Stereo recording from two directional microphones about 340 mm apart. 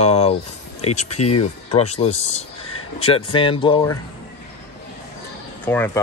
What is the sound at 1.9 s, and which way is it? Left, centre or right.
Speech, centre.